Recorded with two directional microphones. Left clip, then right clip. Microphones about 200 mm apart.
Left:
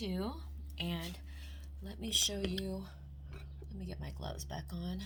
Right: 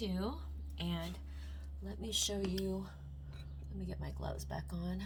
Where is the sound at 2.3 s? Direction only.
35° left (ahead or behind).